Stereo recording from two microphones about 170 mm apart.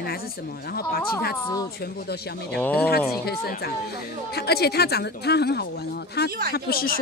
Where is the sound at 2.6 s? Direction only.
10° left (ahead or behind).